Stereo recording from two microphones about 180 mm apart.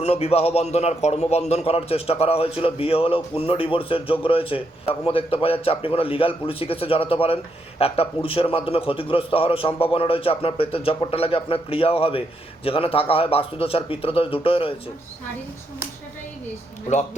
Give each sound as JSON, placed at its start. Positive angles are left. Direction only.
{"t": 0.0, "sound": "a man's voice", "side_deg": 35}